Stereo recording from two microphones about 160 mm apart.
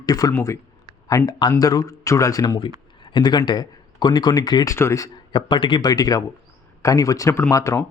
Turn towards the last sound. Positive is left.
turn(degrees=20)  # may be behind; listen again after turning